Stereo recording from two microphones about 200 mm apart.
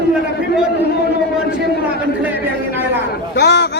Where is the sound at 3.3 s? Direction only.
55° left (ahead or behind).